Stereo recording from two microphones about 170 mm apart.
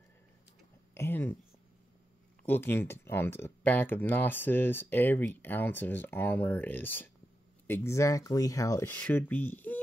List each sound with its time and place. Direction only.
0.9 s speech: 15° left (ahead or behind)
2.4 s speech: 10° left (ahead or behind)